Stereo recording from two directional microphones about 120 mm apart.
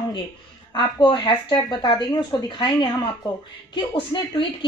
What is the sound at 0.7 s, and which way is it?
A woman's voice, 40° left (ahead or behind).